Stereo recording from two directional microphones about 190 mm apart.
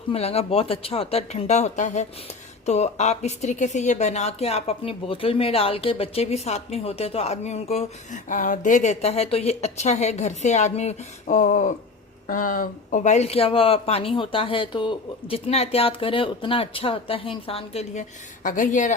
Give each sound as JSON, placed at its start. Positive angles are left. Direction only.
{"t": 0.1, "sound": "a woman's voice", "side_deg": 30}
{"t": 18.4, "sound": "speech", "side_deg": 45}